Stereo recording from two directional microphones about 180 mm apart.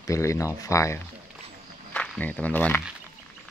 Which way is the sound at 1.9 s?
5° left (ahead or behind).